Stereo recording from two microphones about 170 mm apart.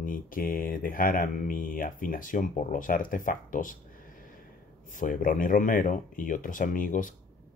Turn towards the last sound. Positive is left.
turn(degrees=50)  # may be behind; listen again after turning